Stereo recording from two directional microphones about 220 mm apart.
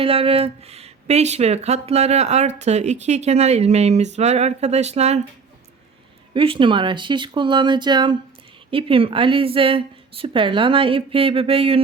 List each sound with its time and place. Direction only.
0.0 s speech: 25° right (ahead or behind)
6.3 s speech: 25° right (ahead or behind)